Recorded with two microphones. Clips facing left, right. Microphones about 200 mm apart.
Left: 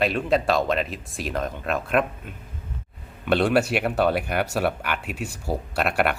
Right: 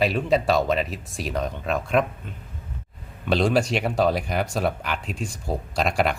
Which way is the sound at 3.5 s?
5° left (ahead or behind).